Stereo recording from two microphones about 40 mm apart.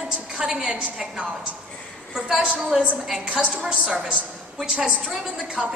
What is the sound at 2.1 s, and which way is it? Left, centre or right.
Speech, centre.